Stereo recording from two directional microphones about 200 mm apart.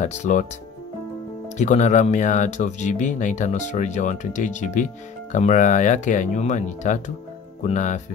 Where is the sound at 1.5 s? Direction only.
35° left (ahead or behind).